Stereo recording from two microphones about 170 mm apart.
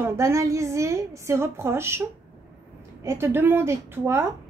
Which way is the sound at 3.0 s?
15° right (ahead or behind).